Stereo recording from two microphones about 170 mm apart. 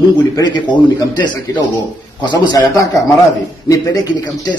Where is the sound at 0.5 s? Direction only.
25° left (ahead or behind).